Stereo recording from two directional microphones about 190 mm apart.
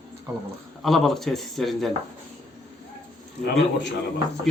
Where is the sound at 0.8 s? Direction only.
Centre (ahead or behind).